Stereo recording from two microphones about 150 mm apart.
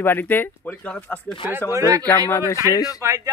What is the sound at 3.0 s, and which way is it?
Speech, 20° right (ahead or behind).